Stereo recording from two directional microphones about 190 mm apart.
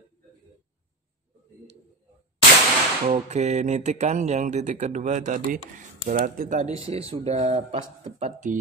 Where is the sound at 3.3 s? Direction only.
35° right (ahead or behind).